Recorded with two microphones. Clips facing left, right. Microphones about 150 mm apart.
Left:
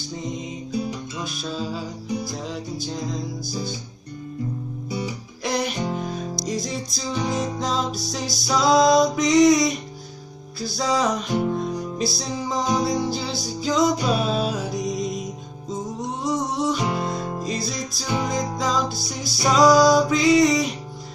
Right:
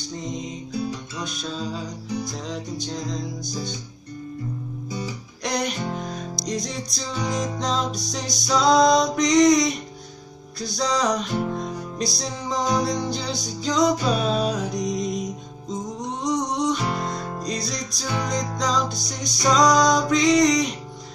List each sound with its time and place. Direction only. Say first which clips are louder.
1.2 s music: even; 5° left (ahead or behind)
5.4 s music: left 1 dB; 5° left (ahead or behind)
18.0 s music: left 2 dB; 20° left (ahead or behind)
18.6 s music: left 1 dB; 5° left (ahead or behind)